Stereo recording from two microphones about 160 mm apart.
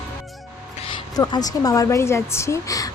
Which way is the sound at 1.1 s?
25° left (ahead or behind).